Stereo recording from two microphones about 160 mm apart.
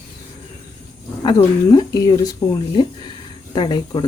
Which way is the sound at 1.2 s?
30° left (ahead or behind).